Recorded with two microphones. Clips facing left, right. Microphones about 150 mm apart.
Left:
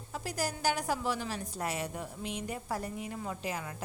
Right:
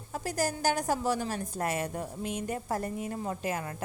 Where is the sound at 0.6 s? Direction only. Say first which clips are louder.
Right 2 dB; 45° right (ahead or behind).